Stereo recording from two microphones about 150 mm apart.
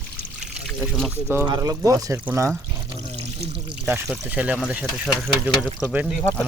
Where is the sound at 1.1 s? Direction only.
15° right (ahead or behind).